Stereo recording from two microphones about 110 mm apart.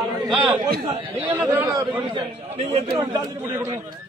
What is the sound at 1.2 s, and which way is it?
Speech, 20° right (ahead or behind).